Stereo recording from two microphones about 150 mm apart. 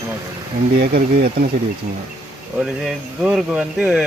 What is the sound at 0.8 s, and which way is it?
Speech, 90° right.